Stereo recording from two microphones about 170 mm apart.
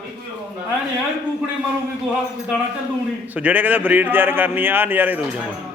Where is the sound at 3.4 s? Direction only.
10° right (ahead or behind).